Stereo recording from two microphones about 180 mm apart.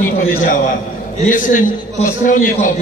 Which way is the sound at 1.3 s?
45° left (ahead or behind).